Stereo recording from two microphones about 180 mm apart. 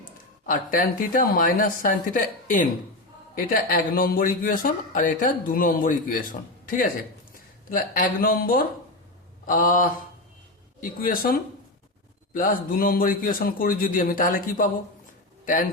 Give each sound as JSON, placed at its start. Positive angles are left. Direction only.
{"t": 0.4, "sound": "a man's voice", "side_deg": 50}